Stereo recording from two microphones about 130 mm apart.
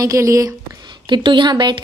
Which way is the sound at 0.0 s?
25° right (ahead or behind).